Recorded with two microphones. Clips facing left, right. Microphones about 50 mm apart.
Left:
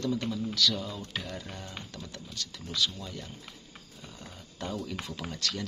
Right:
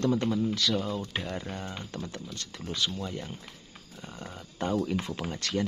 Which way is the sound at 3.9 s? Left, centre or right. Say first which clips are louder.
Right 6 dB; right.